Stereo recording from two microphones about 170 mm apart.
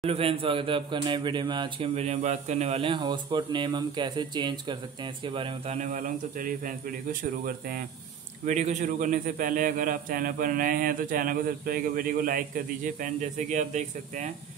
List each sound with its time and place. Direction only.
0.0 s speech: 35° right (ahead or behind)
2.0 s speech: 40° right (ahead or behind)
5.8 s a man's voice: 50° right (ahead or behind)
8.5 s a man's voice: 45° right (ahead or behind)